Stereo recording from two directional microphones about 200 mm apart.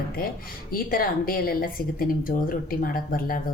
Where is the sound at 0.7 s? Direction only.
45° left (ahead or behind).